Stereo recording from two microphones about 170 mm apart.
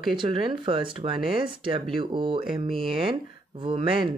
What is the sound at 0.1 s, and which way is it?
Speech, 30° right (ahead or behind).